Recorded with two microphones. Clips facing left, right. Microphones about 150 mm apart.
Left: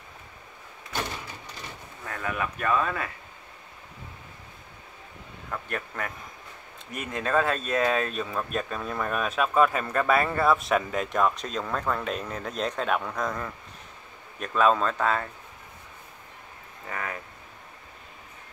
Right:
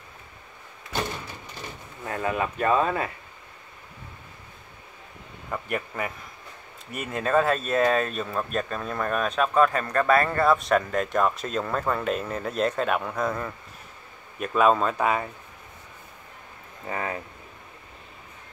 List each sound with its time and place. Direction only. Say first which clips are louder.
2.0 s speech: right 4 dB; 30° right (ahead or behind)
5.5 s speech: right 4 dB; 5° right (ahead or behind)
16.8 s speech: right 4 dB; 30° right (ahead or behind)